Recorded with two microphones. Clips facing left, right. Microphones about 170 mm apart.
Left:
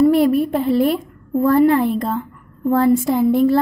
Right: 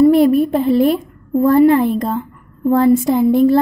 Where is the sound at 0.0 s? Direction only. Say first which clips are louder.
Right 3 dB; 20° right (ahead or behind).